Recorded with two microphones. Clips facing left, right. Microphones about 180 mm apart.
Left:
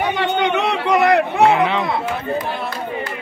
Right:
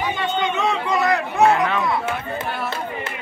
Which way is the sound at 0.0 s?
70° left (ahead or behind).